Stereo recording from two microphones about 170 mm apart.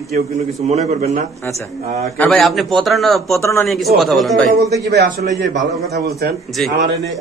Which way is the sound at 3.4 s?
15° left (ahead or behind).